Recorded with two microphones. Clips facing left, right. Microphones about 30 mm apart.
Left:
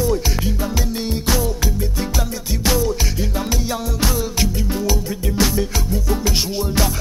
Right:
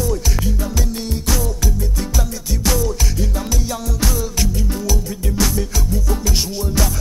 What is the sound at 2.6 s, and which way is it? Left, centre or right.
Music, left.